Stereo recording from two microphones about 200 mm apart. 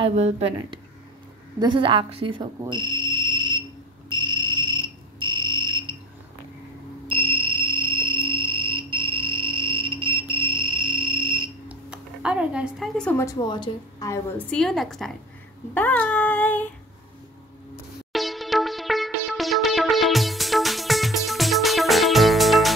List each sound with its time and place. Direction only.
0.0 s a woman's voice: 30° right (ahead or behind)
4.1 s cricket: 25° right (ahead or behind)
7.1 s music: 25° right (ahead or behind)
8.2 s cricket: 25° right (ahead or behind)
10.3 s music: 25° right (ahead or behind)
11.7 s music: 5° right (ahead or behind)
13.2 s a woman's voice: 20° left (ahead or behind)
14.5 s a woman's voice: centre (ahead or behind)
15.7 s child singing: 10° left (ahead or behind)
18.1 s music: centre (ahead or behind)